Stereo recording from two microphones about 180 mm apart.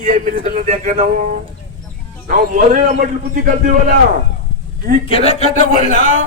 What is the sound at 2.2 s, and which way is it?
A man's voice, 45° right (ahead or behind).